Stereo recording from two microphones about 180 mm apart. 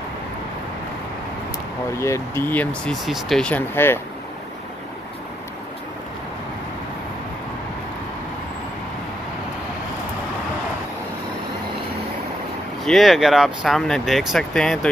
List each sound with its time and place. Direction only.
1.9 s speech: 15° left (ahead or behind)
12.8 s speech: centre (ahead or behind)